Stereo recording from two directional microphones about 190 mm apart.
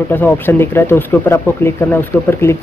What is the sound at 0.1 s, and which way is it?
Speech, 10° left (ahead or behind).